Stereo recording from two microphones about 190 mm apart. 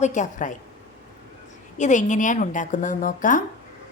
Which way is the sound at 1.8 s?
40° left (ahead or behind).